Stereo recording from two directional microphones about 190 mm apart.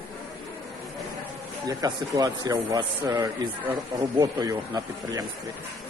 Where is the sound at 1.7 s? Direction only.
20° right (ahead or behind).